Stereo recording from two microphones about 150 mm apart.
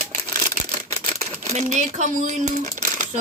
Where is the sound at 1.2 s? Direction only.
50° right (ahead or behind).